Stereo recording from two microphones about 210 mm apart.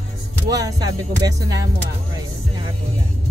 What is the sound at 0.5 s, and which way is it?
Speech, 15° right (ahead or behind).